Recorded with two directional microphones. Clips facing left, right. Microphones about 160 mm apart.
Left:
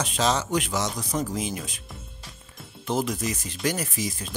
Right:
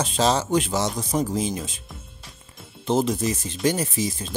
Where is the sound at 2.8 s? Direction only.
25° right (ahead or behind).